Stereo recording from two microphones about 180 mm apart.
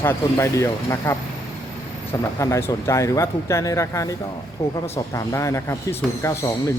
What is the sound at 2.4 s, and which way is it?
Speech, 15° left (ahead or behind).